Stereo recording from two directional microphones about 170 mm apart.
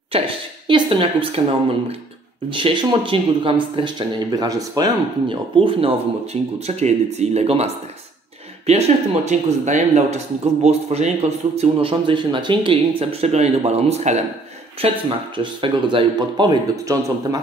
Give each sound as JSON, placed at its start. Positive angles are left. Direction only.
{"t": 0.1, "sound": "speech", "side_deg": -35}
{"t": 2.5, "sound": "a man's voice", "side_deg": -30}